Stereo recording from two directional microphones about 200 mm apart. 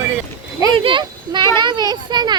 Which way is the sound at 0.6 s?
25° right (ahead or behind).